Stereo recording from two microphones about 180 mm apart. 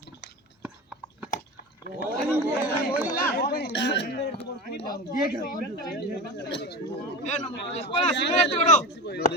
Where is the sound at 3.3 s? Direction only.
60° left (ahead or behind).